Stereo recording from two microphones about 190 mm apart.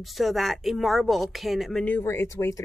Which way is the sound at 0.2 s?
Centre (ahead or behind).